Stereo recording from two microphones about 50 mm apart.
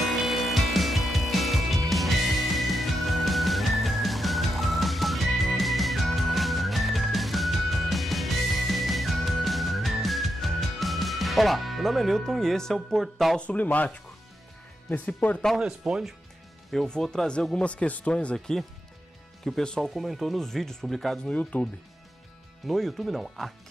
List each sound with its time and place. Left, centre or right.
0.0 s music: centre
13.4 s speech: left
14.9 s speech: left
15.6 s speech: centre
16.7 s speech: centre
17.6 s speech: left
19.4 s speech: centre
19.8 s speech: centre
21.3 s speech: left
22.7 s speech: centre